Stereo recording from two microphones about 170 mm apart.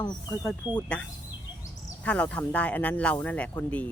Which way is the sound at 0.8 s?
5° left (ahead or behind).